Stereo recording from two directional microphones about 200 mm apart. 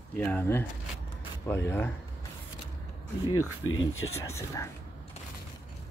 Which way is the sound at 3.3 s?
90° left.